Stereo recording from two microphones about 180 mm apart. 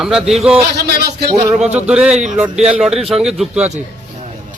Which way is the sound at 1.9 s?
5° right (ahead or behind).